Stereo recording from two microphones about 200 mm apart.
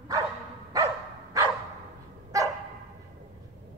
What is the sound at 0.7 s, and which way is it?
Dog, 15° right (ahead or behind).